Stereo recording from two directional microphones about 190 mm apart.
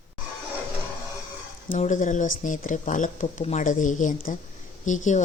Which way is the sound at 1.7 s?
40° left (ahead or behind).